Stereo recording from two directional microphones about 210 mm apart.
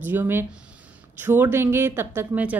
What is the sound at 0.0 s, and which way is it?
A woman's voice, 10° right (ahead or behind).